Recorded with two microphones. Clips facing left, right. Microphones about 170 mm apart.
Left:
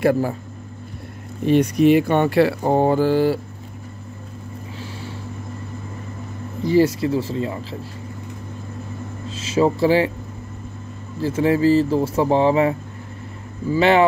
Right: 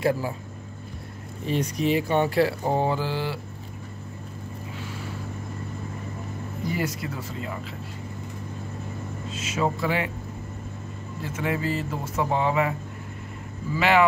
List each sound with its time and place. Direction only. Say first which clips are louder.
0.0 s speech: left 6 dB; 60° left (ahead or behind)
1.4 s speech: left 10 dB; 65° left (ahead or behind); by 3.3 s 45° left (ahead or behind)
6.7 s speech: left 14 dB; 30° left (ahead or behind)
9.3 s speech: left 8 dB; 30° left (ahead or behind)
11.1 s speech: left 10 dB; 35° left (ahead or behind)
13.7 s speech: left 5 dB; 30° left (ahead or behind)